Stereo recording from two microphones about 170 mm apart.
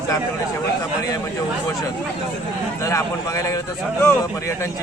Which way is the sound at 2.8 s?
20° left (ahead or behind).